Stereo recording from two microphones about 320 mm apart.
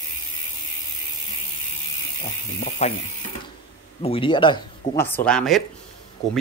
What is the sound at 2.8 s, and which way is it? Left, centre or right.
Speech, left.